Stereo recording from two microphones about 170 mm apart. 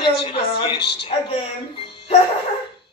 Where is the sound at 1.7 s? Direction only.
30° left (ahead or behind).